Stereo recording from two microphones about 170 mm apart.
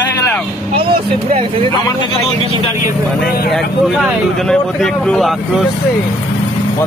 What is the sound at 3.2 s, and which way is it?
Speech, 60° left (ahead or behind).